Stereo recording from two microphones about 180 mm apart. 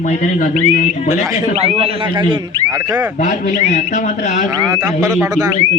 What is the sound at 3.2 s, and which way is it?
Speech, 45° left (ahead or behind).